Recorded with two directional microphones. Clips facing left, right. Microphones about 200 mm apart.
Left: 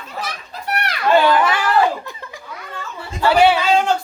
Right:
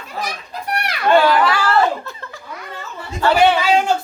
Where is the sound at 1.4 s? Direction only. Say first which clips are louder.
Even; 20° left (ahead or behind).